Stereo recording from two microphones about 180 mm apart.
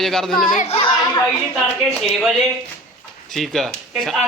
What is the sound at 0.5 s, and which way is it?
Speech, 35° left (ahead or behind).